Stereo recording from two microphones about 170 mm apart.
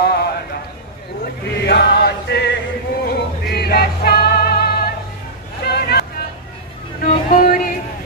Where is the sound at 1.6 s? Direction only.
75° left (ahead or behind).